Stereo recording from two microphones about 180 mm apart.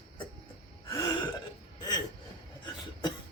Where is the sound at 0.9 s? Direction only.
20° left (ahead or behind).